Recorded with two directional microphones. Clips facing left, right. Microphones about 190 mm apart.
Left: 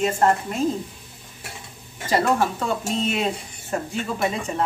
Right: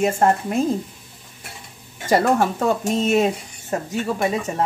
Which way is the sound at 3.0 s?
45° right (ahead or behind).